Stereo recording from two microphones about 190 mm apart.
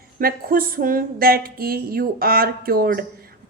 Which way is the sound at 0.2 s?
50° right (ahead or behind).